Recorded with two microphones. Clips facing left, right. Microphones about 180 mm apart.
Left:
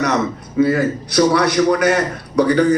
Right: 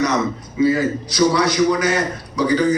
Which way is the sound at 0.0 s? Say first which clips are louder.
Left 1 dB; 60° left (ahead or behind).